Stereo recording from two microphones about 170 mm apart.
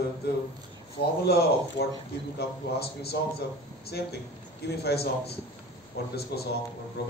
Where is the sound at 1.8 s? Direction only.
85° left.